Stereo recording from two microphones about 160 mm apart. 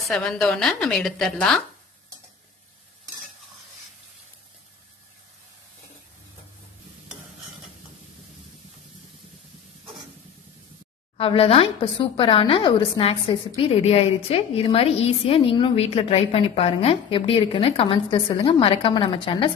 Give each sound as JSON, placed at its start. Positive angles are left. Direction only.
{"t": 0.0, "sound": "a woman's voice", "side_deg": 5}
{"t": 11.1, "sound": "a woman's voice", "side_deg": 35}